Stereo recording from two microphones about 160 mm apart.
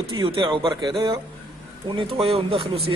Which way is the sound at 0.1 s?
30° right (ahead or behind).